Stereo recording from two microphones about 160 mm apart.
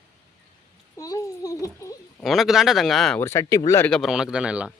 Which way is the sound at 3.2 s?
15° left (ahead or behind).